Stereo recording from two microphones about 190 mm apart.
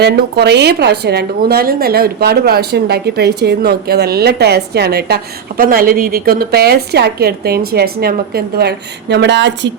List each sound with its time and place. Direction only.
0.0 s speech: 60° right (ahead or behind)